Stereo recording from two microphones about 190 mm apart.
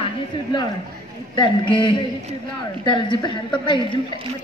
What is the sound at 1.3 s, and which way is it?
A woman's voice, 25° left (ahead or behind).